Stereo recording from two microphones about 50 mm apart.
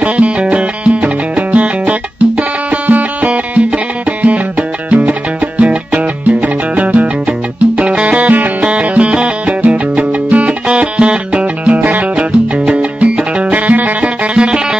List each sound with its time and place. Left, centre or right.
0.0 s music: right
5.9 s music: right; by 14.8 s centre